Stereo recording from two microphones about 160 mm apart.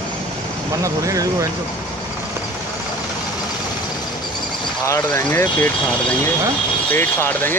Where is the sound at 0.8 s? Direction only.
20° right (ahead or behind).